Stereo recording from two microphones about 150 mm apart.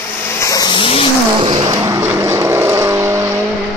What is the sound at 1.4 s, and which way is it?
Vehicle, 30° right (ahead or behind).